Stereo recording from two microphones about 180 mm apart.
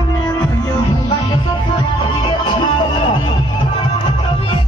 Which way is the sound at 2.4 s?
30° left (ahead or behind).